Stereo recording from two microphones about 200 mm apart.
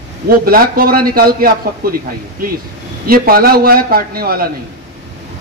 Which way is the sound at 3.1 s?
50° right (ahead or behind).